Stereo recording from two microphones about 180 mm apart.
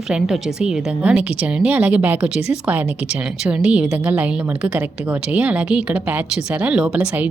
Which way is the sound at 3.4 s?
5° right (ahead or behind).